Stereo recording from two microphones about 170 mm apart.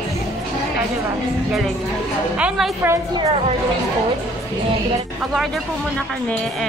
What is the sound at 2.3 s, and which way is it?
Speech, 5° right (ahead or behind).